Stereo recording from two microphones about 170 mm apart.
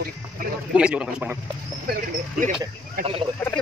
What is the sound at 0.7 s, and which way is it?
Speech, 5° right (ahead or behind).